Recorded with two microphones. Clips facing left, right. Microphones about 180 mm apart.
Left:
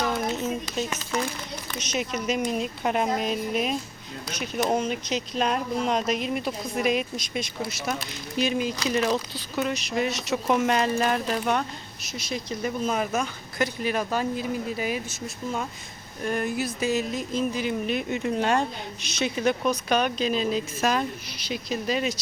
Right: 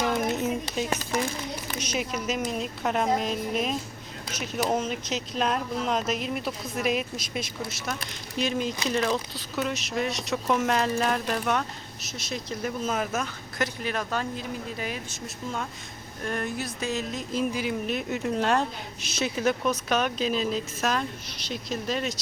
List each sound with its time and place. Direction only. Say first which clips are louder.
0.1 s a sound: right 1 dB; 15° right (ahead or behind)
1.8 s speech: left 2 dB; 10° right (ahead or behind); by 15.0 s 5° left (ahead or behind)
16.2 s speech: left 4 dB; 5° left (ahead or behind)